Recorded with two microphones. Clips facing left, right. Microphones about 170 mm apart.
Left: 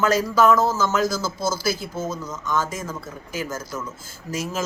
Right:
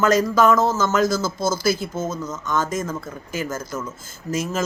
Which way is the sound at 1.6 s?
50° right (ahead or behind).